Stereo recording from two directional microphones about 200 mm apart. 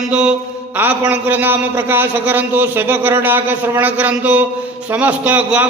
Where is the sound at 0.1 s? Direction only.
5° right (ahead or behind).